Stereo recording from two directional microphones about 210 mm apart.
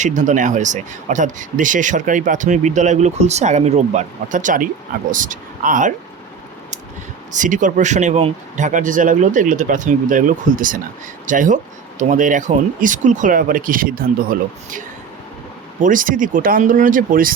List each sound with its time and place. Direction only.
0.0 s speech: 35° right (ahead or behind)
7.3 s speech: 40° right (ahead or behind)